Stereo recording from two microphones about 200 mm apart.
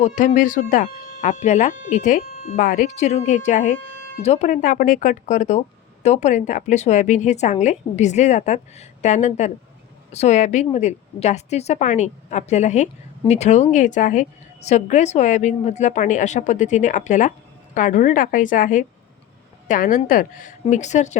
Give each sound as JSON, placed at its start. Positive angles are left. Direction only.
{"t": 0.0, "sound": "a woman's voice", "side_deg": 35}